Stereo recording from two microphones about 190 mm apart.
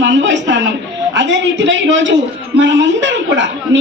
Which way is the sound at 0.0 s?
70° right (ahead or behind).